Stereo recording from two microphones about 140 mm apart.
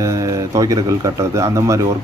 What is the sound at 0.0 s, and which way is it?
Speech, 20° right (ahead or behind).